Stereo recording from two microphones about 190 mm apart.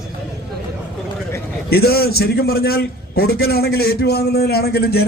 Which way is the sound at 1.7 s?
55° left (ahead or behind).